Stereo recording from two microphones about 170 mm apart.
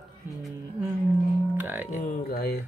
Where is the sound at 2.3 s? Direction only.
70° left (ahead or behind).